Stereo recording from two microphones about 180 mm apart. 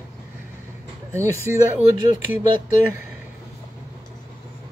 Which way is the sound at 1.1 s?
15° right (ahead or behind).